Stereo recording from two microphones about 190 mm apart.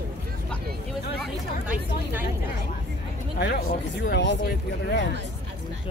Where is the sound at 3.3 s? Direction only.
60° left (ahead or behind).